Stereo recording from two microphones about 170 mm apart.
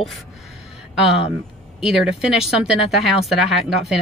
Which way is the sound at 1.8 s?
5° right (ahead or behind).